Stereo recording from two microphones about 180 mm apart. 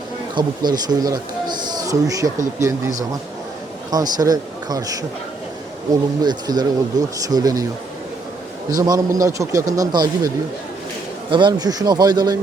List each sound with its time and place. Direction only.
0.3 s speech: 25° right (ahead or behind)
3.9 s speech: 20° right (ahead or behind)
8.7 s speech: 20° right (ahead or behind)